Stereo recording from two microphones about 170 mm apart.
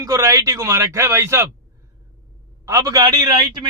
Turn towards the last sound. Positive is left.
turn(degrees=-25)  # may be behind; listen again after turning